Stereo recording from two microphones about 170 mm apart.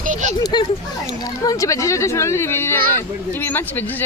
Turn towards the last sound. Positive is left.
turn(degrees=10)  # may be behind; listen again after turning